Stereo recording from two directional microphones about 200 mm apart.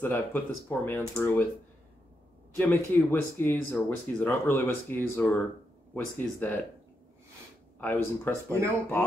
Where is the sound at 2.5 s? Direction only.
10° left (ahead or behind).